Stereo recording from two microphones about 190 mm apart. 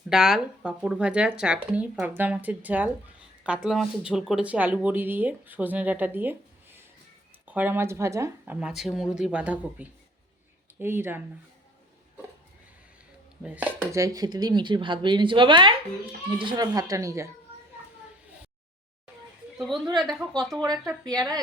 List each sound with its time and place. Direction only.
0.1 s speech: 5° right (ahead or behind)
7.4 s speech: 10° right (ahead or behind)
8.5 s speech: 5° right (ahead or behind)
13.4 s speech: 10° right (ahead or behind)
19.7 s speech: 20° right (ahead or behind)
20.0 s speech: centre (ahead or behind)
20.6 s speech: 20° right (ahead or behind)